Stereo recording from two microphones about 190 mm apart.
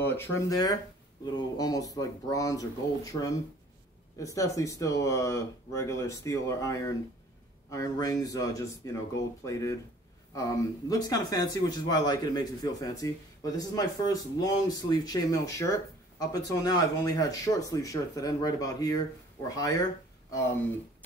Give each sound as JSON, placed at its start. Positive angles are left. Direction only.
{"t": 0.0, "sound": "speech", "side_deg": 10}